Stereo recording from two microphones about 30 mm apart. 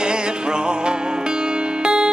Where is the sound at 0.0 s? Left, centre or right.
Right.